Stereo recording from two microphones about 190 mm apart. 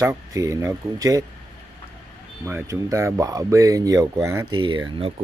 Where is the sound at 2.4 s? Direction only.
10° right (ahead or behind).